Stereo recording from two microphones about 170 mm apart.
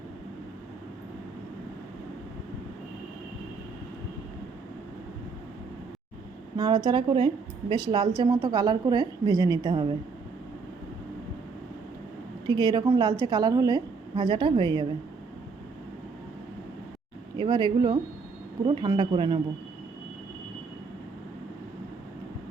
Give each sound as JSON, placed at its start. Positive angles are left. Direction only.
{"t": 6.6, "sound": "a woman's voice", "side_deg": -25}
{"t": 12.5, "sound": "a woman's voice", "side_deg": -25}
{"t": 17.3, "sound": "a woman's voice", "side_deg": -25}